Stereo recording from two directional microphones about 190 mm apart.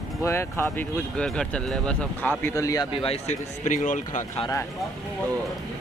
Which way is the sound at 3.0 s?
35° left (ahead or behind).